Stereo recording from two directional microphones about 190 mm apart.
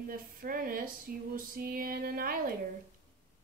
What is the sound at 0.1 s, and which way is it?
Speech, 50° right (ahead or behind).